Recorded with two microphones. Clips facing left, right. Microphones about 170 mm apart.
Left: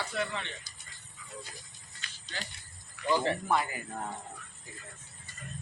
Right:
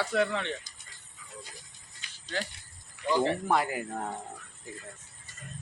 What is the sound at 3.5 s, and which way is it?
Speech, 70° right (ahead or behind).